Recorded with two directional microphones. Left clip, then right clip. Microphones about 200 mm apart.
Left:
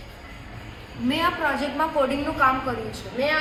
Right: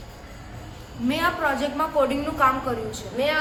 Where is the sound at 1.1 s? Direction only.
Centre (ahead or behind).